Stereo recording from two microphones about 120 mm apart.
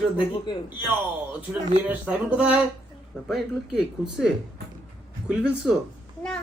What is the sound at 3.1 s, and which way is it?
Speech, 20° left (ahead or behind).